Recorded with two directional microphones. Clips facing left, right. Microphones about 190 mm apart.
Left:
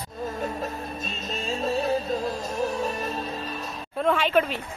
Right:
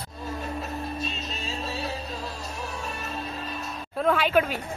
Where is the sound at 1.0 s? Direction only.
50° left (ahead or behind).